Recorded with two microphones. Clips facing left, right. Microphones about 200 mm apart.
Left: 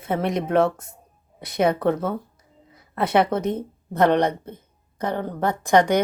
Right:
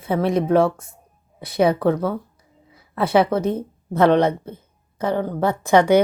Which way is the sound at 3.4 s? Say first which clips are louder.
Right 3 dB; 20° left (ahead or behind).